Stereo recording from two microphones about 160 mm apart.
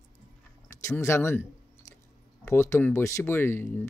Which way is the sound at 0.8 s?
15° left (ahead or behind).